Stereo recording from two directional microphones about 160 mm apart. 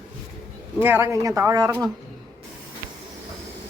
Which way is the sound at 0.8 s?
15° right (ahead or behind).